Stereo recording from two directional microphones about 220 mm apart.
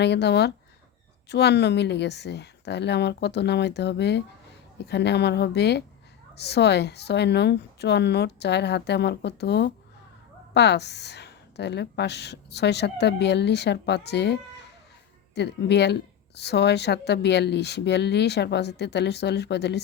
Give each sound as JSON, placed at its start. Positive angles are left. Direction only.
{"t": 0.0, "sound": "a woman's voice", "side_deg": 50}
{"t": 15.4, "sound": "a woman's voice", "side_deg": 50}